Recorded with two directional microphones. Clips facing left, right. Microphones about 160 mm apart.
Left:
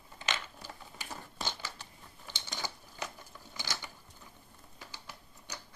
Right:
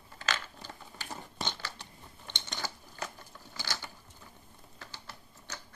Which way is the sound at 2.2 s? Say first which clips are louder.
Right 1 dB; 5° left (ahead or behind).